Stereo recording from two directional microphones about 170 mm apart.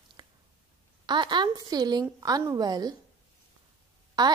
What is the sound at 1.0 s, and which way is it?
A woman's voice, 25° right (ahead or behind).